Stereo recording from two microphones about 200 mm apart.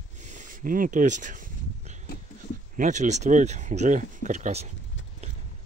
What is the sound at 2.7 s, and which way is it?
Speech, 40° right (ahead or behind).